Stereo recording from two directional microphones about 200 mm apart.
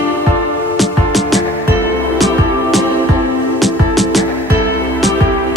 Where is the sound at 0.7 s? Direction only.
Centre (ahead or behind).